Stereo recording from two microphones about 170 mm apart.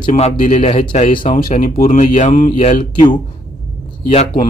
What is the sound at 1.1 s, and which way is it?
Speech, 30° left (ahead or behind).